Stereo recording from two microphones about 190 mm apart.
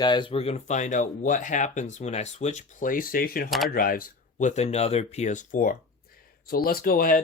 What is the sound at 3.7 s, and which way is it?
Speech, 50° left (ahead or behind).